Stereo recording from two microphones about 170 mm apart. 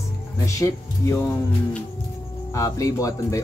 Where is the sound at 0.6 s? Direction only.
20° left (ahead or behind).